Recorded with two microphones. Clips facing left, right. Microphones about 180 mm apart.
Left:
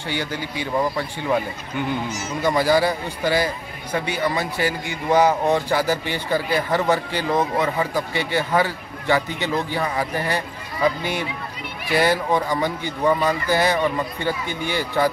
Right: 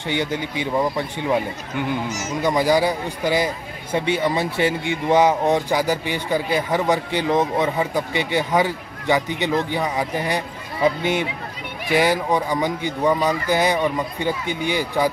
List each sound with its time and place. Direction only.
0.1 s speech: 20° right (ahead or behind)
3.9 s speech: 25° right (ahead or behind)